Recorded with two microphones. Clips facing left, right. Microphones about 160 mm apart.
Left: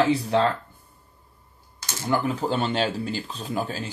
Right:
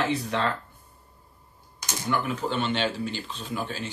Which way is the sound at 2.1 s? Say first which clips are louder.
Left 4 dB; 35° left (ahead or behind).